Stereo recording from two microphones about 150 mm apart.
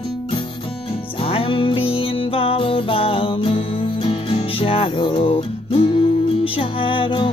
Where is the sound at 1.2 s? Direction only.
35° left (ahead or behind).